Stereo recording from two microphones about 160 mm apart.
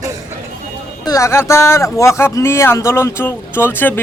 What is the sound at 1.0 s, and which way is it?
Speech, 20° left (ahead or behind).